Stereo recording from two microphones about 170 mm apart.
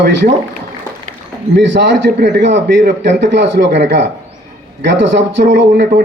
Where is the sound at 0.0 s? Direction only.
90° right.